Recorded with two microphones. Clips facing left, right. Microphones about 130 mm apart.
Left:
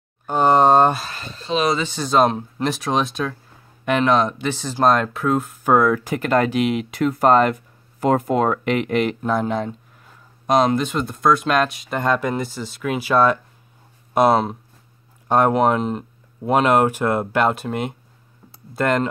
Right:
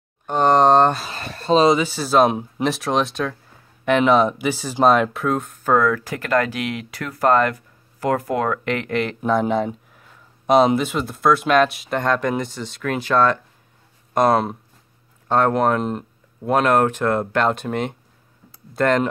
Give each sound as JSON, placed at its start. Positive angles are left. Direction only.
{"t": 0.3, "sound": "speech", "side_deg": 5}
{"t": 1.2, "sound": "a sound", "side_deg": -65}
{"t": 1.8, "sound": "speech", "side_deg": -5}
{"t": 9.2, "sound": "speech", "side_deg": 0}